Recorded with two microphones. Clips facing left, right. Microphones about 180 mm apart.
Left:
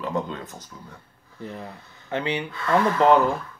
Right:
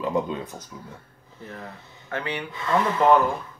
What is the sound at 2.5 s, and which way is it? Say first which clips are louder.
Speech: left 1 dB; 20° right (ahead or behind).